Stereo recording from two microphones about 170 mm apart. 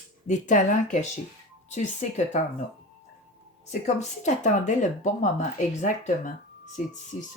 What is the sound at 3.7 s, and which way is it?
Speech, 45° left (ahead or behind).